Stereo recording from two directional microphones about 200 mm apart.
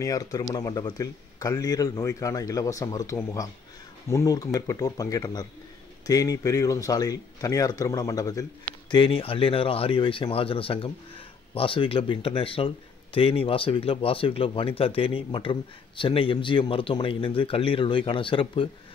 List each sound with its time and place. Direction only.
0.0 s speech: 15° left (ahead or behind)